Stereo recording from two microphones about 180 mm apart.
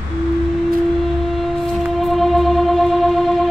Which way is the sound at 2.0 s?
Centre (ahead or behind).